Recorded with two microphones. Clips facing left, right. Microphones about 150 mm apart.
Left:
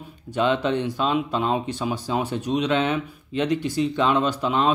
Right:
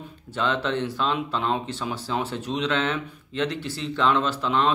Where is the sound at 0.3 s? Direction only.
15° left (ahead or behind).